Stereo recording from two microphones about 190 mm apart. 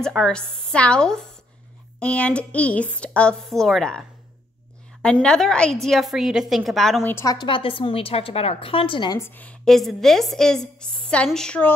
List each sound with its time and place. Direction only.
0.0 s a woman's voice: 5° left (ahead or behind)
5.2 s a woman's voice: 5° left (ahead or behind)
7.0 s a woman's voice: 15° left (ahead or behind)
9.2 s a woman's voice: 10° left (ahead or behind)